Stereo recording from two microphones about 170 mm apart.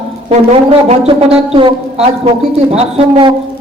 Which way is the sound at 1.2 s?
35° right (ahead or behind).